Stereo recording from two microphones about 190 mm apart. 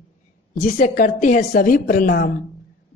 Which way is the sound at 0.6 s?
45° left (ahead or behind).